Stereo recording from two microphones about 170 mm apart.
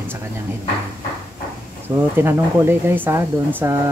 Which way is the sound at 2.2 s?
15° right (ahead or behind).